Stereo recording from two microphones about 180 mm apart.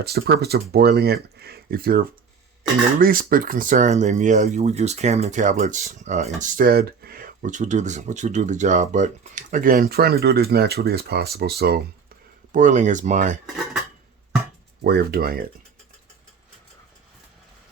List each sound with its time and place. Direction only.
0.0 s speech: 60° right (ahead or behind)
12.5 s speech: 45° right (ahead or behind)
14.8 s speech: 60° right (ahead or behind)